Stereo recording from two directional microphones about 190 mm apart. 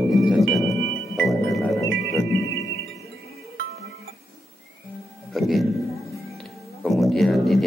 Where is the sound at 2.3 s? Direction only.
80° right.